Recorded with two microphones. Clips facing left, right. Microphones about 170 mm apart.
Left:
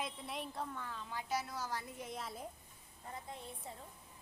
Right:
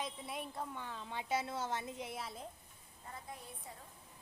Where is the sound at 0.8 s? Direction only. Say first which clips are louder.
Right 1 dB; 25° right (ahead or behind).